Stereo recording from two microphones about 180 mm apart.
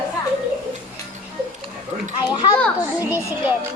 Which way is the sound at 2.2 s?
25° left (ahead or behind).